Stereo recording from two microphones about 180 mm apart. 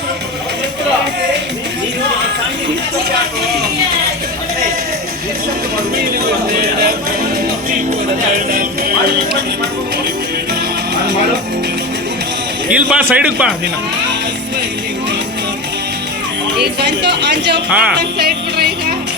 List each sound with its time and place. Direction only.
8.5 s music: 55° right (ahead or behind)
12.7 s a man's voice: 5° right (ahead or behind)
16.6 s speech: 70° right (ahead or behind)
17.7 s speech: 5° right (ahead or behind)
17.9 s music: 60° right (ahead or behind)